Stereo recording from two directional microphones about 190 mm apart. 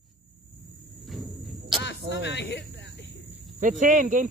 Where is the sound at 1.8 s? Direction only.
65° left (ahead or behind).